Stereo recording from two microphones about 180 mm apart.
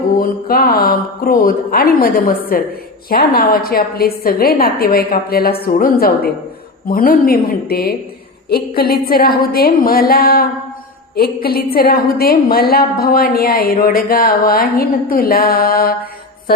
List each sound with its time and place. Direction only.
0.2 s a woman's voice: 55° left (ahead or behind)